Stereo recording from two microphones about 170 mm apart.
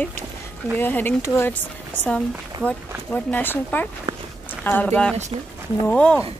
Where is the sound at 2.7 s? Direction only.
10° left (ahead or behind).